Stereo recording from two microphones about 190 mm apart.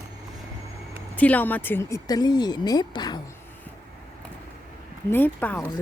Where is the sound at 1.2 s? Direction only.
10° left (ahead or behind).